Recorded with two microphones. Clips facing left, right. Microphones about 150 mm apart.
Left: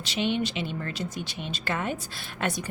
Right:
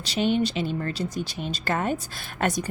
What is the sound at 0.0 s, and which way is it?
A woman's voice, 40° right (ahead or behind).